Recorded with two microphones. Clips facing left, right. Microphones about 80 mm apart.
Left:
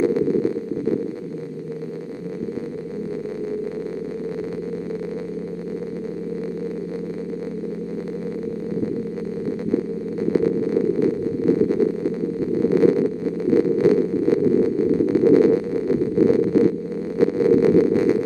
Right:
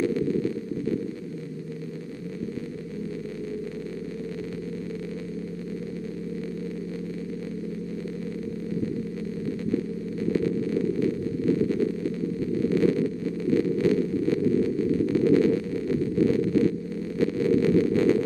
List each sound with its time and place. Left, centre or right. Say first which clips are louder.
0.0 s sidetone: left 6 dB; left
10.3 s a sound: left 6 dB; left
17.2 s heart murmur: left 7 dB; left